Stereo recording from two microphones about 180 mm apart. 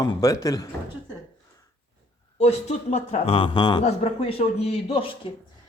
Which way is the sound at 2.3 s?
40° left (ahead or behind).